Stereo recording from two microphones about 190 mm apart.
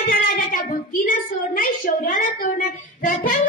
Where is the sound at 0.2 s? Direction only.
50° left (ahead or behind).